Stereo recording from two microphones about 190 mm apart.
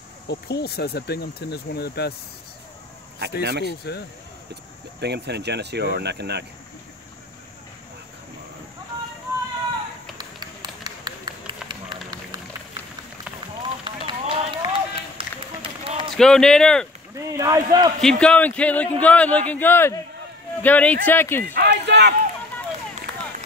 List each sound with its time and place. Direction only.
0.3 s speech: 60° left (ahead or behind)
3.4 s speech: 60° right (ahead or behind)
5.0 s speech: 60° right (ahead or behind)
10.1 s run: 20° right (ahead or behind)
13.6 s run: 25° right (ahead or behind)
16.2 s speech: 5° left (ahead or behind)
17.1 s a man's voice: 15° right (ahead or behind)
18.0 s speech: 5° left (ahead or behind)
21.5 s run: 65° right (ahead or behind)